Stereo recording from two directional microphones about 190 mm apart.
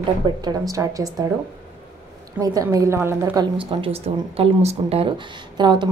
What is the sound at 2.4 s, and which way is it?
Speech, 20° right (ahead or behind).